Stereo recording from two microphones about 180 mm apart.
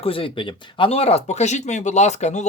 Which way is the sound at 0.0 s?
30° left (ahead or behind).